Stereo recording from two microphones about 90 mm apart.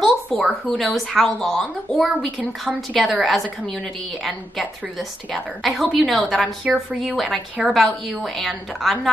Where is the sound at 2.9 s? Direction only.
Centre (ahead or behind).